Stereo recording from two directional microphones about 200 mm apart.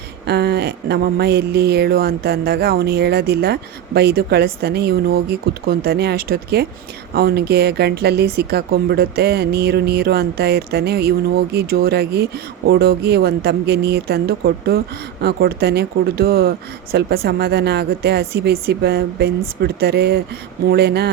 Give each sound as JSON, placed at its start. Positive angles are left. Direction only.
{"t": 0.3, "sound": "a woman's voice", "side_deg": -55}